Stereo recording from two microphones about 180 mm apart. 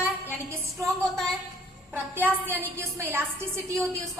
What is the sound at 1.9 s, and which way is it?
A woman's voice, 10° right (ahead or behind).